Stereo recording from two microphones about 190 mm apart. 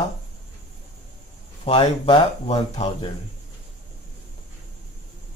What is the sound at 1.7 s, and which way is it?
Speech, 25° left (ahead or behind).